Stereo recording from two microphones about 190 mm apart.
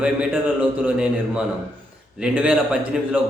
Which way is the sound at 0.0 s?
5° right (ahead or behind).